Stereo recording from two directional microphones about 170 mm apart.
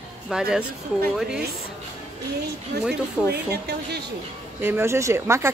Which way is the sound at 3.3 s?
75° right (ahead or behind).